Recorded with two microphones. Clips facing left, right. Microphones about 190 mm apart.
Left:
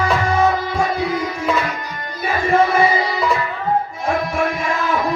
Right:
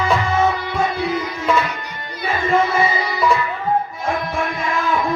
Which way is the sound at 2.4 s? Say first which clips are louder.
Left 2 dB; 20° right (ahead or behind).